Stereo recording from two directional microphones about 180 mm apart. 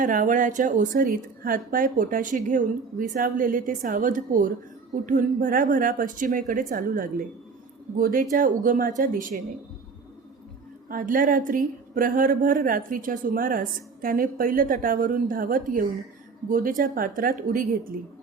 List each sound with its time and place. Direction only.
0.0 s a woman's voice: 50° right (ahead or behind)
10.8 s a woman's voice: 50° right (ahead or behind)